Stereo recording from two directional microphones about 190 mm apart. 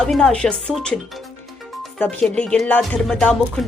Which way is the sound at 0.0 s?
Centre (ahead or behind).